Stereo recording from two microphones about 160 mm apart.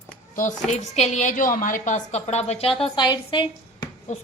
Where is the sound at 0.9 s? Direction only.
45° left (ahead or behind); by 3.5 s 30° left (ahead or behind).